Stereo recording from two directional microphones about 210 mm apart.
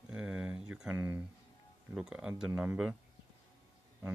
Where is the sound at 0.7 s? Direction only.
5° right (ahead or behind).